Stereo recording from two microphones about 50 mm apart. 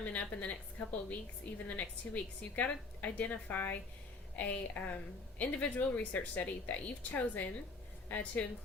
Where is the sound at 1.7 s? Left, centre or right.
Left.